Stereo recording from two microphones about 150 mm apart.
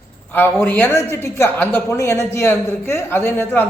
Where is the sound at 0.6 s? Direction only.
15° left (ahead or behind).